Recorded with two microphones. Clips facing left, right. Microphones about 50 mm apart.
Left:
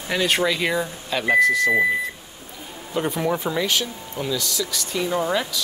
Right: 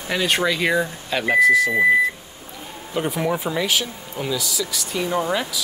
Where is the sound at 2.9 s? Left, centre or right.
Centre.